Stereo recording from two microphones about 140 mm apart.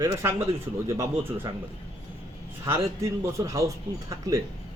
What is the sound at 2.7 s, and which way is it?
Speech, 20° right (ahead or behind).